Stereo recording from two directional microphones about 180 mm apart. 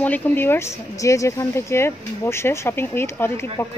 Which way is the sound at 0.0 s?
10° left (ahead or behind).